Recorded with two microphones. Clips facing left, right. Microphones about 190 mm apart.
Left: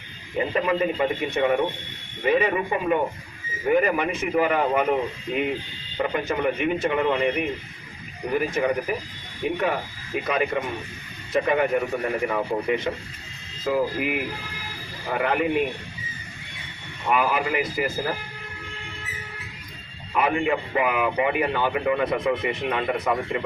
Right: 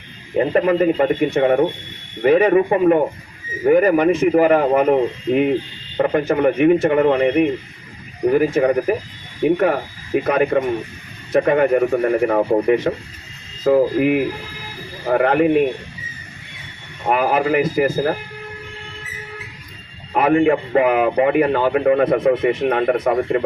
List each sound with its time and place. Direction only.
0.3 s a man's voice: 50° right (ahead or behind)
6.0 s a man's voice: 55° right (ahead or behind)
8.4 s speech: 70° right (ahead or behind)
9.4 s a man's voice: 60° right (ahead or behind)
17.1 s a man's voice: 50° right (ahead or behind)
20.1 s a man's voice: 50° right (ahead or behind)